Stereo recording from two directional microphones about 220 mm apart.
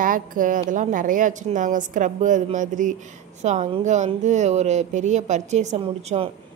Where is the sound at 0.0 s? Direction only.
40° right (ahead or behind).